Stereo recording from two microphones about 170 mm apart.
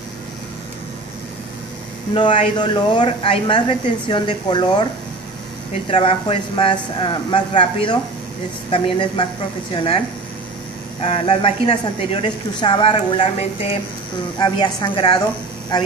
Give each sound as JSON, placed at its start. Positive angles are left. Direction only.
{"t": 2.1, "sound": "speech", "side_deg": 30}
{"t": 5.9, "sound": "a woman's voice", "side_deg": 30}